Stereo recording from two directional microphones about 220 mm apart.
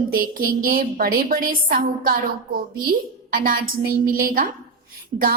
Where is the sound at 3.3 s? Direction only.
40° right (ahead or behind).